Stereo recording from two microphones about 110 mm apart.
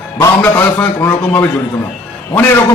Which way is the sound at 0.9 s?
20° left (ahead or behind).